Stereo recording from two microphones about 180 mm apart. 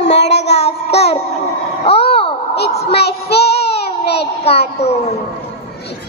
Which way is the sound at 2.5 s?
65° left (ahead or behind).